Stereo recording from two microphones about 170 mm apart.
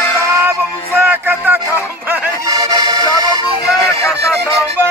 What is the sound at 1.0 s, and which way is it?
Music, 10° right (ahead or behind).